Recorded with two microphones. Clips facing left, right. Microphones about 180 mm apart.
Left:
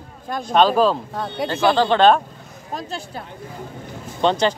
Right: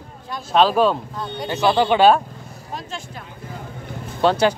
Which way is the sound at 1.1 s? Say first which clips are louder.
Left 4 dB; 65° left (ahead or behind).